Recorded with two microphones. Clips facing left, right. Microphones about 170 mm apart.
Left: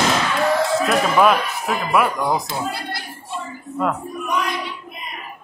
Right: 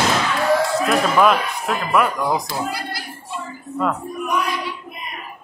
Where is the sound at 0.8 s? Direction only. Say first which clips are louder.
Left 1 dB; centre (ahead or behind).